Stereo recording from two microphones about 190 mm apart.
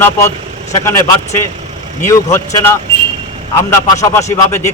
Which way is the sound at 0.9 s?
15° left (ahead or behind).